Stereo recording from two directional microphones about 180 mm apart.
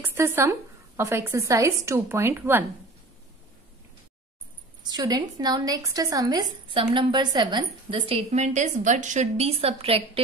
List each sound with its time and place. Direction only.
0.0 s speech: 15° right (ahead or behind)
4.8 s a woman's voice: 20° right (ahead or behind)